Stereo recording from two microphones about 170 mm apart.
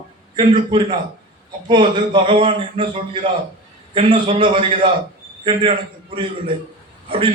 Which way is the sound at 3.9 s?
30° right (ahead or behind).